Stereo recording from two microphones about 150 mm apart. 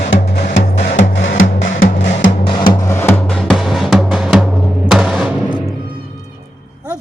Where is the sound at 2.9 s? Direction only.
15° left (ahead or behind).